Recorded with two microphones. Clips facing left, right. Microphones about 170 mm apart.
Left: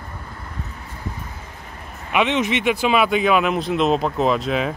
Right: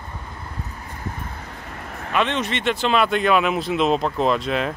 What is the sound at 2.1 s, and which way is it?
Speech, 15° left (ahead or behind).